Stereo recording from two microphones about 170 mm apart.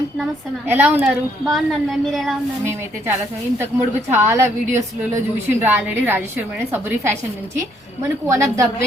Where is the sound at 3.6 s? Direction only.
15° right (ahead or behind).